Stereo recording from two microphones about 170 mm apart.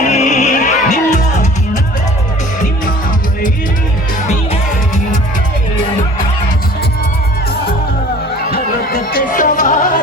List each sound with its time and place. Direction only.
0.0 s music: 45° left (ahead or behind)
8.4 s music: 60° left (ahead or behind)